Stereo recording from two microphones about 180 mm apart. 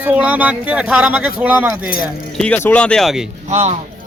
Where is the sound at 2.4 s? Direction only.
5° left (ahead or behind).